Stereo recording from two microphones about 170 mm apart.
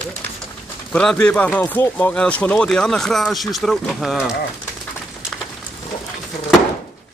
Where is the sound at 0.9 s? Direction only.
5° left (ahead or behind).